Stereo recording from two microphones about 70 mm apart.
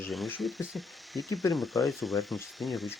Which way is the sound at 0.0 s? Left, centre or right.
Centre.